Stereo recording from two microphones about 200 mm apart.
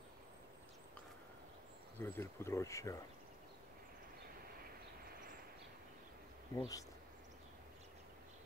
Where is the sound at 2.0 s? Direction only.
10° left (ahead or behind).